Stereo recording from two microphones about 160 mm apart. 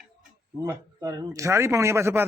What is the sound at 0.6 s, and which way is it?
A man's voice, 20° right (ahead or behind).